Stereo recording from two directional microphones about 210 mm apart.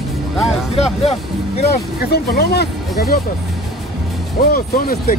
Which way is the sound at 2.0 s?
50° left (ahead or behind).